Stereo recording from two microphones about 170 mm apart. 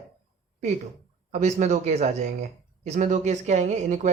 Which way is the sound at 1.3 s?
45° right (ahead or behind).